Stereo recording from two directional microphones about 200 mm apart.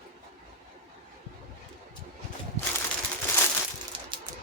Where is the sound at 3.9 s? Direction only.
25° right (ahead or behind).